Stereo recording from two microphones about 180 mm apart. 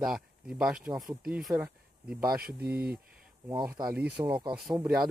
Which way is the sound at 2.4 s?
60° right (ahead or behind).